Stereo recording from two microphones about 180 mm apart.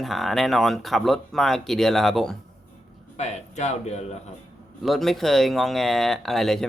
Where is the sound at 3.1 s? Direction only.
40° left (ahead or behind).